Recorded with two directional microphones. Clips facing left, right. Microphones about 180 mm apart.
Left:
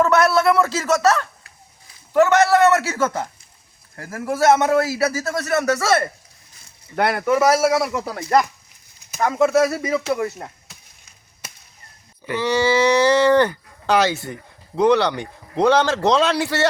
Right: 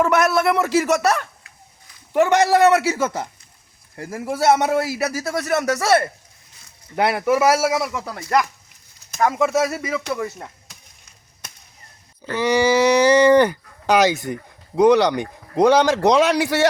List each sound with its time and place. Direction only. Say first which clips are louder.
0.0 s a man's voice: left 1 dB; 10° right (ahead or behind)
8.2 s speech: left 2 dB; 30° left (ahead or behind)
9.1 s speech: left 2 dB; centre (ahead or behind)
12.4 s a man's voice: right 2 dB; 15° right (ahead or behind)